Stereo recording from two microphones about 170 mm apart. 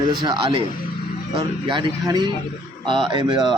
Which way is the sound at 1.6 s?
25° right (ahead or behind).